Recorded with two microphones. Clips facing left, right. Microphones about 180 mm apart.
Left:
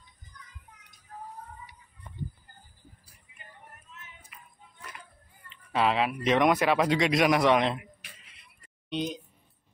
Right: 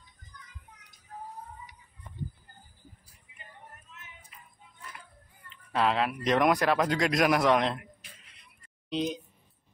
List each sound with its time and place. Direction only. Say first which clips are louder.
4.3 s a sound: left 2 dB; 70° left (ahead or behind)
5.5 s speech: left 1 dB; 5° left (ahead or behind)
8.9 s speech: right 1 dB; centre (ahead or behind)